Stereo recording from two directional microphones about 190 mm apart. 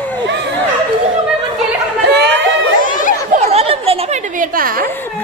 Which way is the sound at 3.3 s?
35° right (ahead or behind).